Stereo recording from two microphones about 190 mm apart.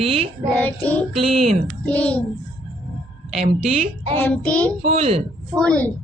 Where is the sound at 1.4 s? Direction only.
5° left (ahead or behind).